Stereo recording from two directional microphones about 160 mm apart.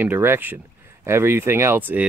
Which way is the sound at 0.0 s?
15° right (ahead or behind).